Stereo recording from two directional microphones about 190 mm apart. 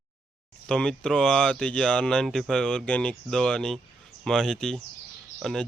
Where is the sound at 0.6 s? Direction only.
5° left (ahead or behind).